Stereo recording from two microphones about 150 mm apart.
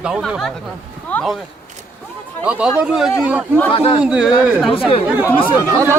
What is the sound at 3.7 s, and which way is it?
Speech, 40° left (ahead or behind).